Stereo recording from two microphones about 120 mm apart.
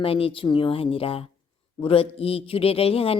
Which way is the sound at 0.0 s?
50° left (ahead or behind).